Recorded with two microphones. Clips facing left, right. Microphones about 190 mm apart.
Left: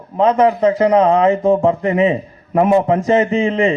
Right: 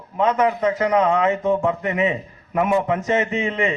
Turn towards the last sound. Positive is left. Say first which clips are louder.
# left 7 dB
turn(degrees=30)  # may be behind; listen again after turning